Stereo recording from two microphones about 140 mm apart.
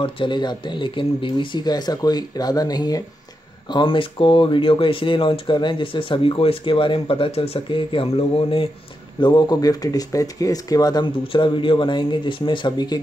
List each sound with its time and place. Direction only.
0.0 s speech: 35° left (ahead or behind)
9.2 s speech: 30° left (ahead or behind)